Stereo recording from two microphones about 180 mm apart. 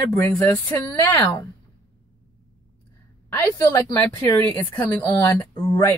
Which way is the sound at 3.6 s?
15° left (ahead or behind).